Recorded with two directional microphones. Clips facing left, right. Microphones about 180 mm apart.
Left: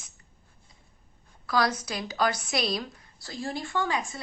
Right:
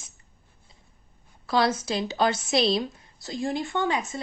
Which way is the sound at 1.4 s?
25° right (ahead or behind).